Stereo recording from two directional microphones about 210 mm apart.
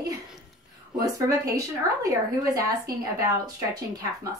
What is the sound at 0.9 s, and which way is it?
A woman's voice, 15° right (ahead or behind).